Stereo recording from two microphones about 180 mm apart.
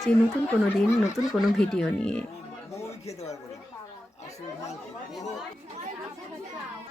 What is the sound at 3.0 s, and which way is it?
Speech, 35° left (ahead or behind).